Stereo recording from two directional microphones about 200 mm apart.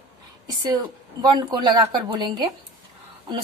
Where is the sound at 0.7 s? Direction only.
20° right (ahead or behind).